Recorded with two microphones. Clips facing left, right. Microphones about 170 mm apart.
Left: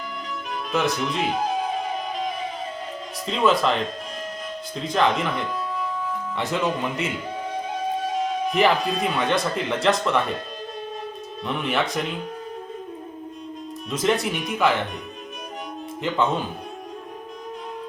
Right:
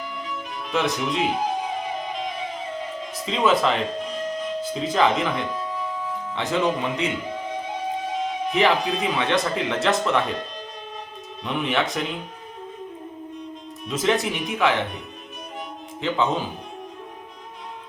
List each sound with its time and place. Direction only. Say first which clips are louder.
0.7 s speech: even; centre (ahead or behind)
3.2 s speech: even; centre (ahead or behind)
8.5 s speech: even; centre (ahead or behind)
11.4 s speech: right 1 dB; centre (ahead or behind)
13.9 s speech: even; centre (ahead or behind)
16.0 s speech: even; centre (ahead or behind)